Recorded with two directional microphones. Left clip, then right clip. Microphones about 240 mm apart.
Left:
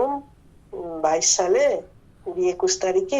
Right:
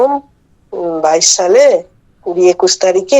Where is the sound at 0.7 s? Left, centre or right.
Right.